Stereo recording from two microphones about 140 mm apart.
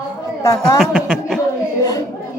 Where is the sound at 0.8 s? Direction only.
Centre (ahead or behind).